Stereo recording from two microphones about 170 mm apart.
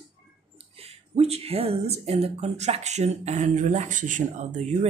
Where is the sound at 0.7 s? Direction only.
35° right (ahead or behind).